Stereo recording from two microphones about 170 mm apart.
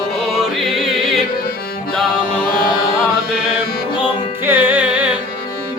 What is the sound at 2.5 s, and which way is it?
Carnatic music, 60° left (ahead or behind).